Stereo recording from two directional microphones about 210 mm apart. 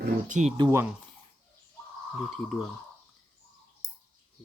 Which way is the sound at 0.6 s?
10° right (ahead or behind).